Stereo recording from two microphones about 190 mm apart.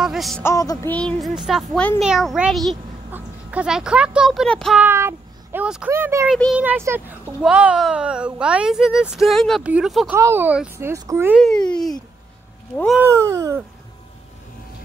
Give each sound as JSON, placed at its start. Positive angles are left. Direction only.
{"t": 0.0, "sound": "a sound", "side_deg": 0}
{"t": 0.4, "sound": "speech", "side_deg": 15}
{"t": 0.9, "sound": "speech", "side_deg": 0}
{"t": 4.8, "sound": "a child's voice", "side_deg": -10}
{"t": 11.3, "sound": "speech", "side_deg": 5}
{"t": 13.0, "sound": "a child's voice", "side_deg": -15}